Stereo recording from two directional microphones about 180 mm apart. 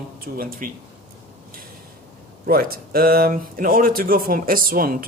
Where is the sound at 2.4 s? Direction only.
55° right (ahead or behind).